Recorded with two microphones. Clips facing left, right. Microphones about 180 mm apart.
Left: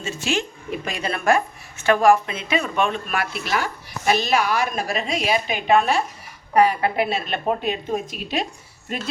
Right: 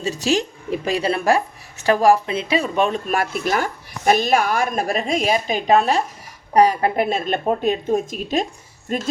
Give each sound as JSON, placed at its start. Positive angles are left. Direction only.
{"t": 0.0, "sound": "a woman's voice", "side_deg": -40}